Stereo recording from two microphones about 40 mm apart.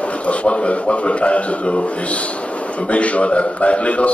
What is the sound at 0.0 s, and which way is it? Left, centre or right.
A man's voice, left.